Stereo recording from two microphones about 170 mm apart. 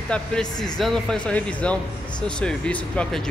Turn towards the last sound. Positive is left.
turn(degrees=5)  # may be behind; listen again after turning